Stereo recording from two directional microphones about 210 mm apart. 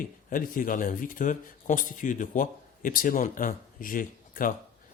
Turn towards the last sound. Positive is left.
turn(degrees=40)  # may be behind; listen again after turning